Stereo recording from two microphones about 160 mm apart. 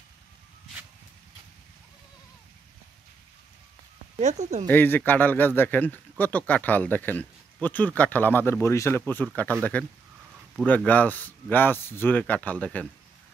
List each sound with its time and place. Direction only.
4.2 s speech: 45° right (ahead or behind)
4.6 s speech: 10° left (ahead or behind)